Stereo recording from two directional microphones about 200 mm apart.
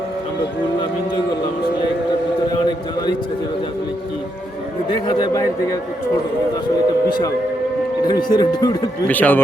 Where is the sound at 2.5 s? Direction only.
20° left (ahead or behind).